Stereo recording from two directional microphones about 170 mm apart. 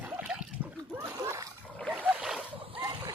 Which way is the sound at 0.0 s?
10° right (ahead or behind).